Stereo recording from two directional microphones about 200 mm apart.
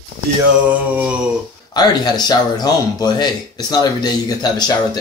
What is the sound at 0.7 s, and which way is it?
Mantra, 5° right (ahead or behind).